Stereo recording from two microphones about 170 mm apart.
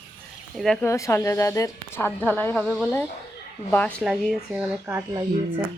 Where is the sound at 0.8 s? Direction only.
15° left (ahead or behind).